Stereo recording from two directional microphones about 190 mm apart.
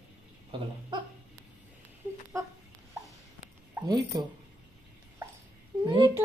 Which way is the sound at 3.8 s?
20° right (ahead or behind).